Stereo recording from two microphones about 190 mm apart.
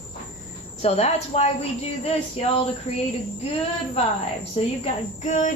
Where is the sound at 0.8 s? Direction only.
35° left (ahead or behind).